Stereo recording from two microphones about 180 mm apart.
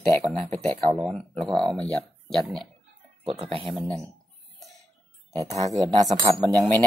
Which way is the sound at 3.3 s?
30° right (ahead or behind).